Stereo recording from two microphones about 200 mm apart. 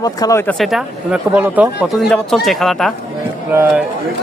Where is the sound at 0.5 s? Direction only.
Centre (ahead or behind).